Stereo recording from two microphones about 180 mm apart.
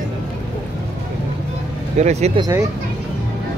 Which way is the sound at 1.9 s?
35° right (ahead or behind).